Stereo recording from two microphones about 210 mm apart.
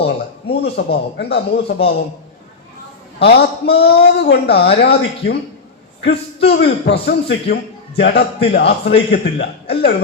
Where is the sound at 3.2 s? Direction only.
50° left (ahead or behind).